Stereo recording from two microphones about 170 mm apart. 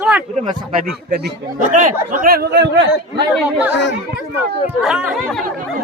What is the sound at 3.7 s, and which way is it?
Speech, 90° left.